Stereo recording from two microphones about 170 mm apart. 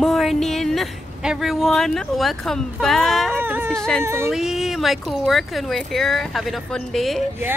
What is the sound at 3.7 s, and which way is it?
Speech, 5° left (ahead or behind).